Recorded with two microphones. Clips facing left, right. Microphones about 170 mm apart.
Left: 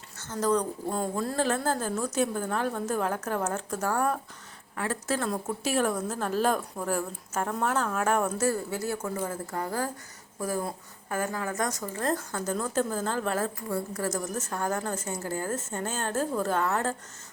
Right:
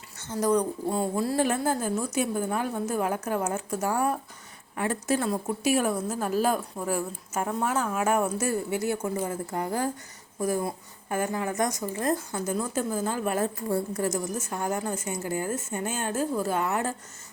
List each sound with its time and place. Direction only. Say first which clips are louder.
0.2 s a woman's voice: right 2 dB; 15° right (ahead or behind)
13.7 s a woman's voice: right 4 dB; 30° right (ahead or behind)
14.0 s a woman's voice: right 2 dB; 10° right (ahead or behind)